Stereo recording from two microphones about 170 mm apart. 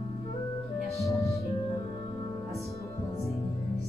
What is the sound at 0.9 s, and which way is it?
Music, 20° left (ahead or behind).